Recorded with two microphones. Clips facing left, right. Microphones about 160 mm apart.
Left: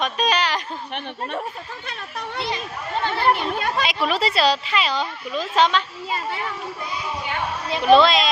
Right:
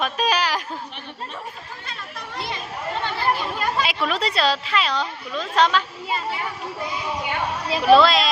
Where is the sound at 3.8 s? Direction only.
5° left (ahead or behind).